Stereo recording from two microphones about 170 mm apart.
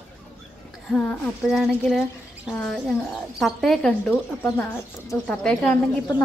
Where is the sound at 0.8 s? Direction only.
5° left (ahead or behind).